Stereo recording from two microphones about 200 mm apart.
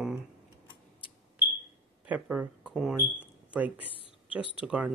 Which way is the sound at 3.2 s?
5° right (ahead or behind).